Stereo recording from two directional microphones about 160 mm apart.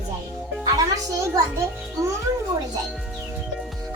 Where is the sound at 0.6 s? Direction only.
20° right (ahead or behind).